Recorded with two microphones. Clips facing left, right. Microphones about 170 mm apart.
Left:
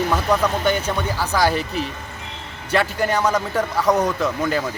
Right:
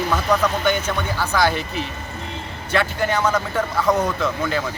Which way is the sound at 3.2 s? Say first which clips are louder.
Left 1 dB; 15° left (ahead or behind).